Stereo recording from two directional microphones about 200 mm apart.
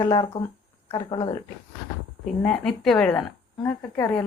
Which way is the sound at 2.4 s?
5° left (ahead or behind).